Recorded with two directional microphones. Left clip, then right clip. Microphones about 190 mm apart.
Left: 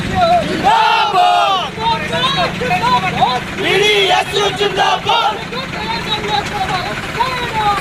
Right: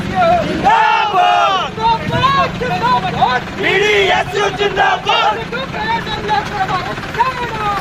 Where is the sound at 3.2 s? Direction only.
Centre (ahead or behind).